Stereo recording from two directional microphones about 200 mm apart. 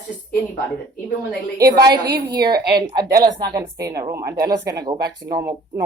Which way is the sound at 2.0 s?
55° right (ahead or behind).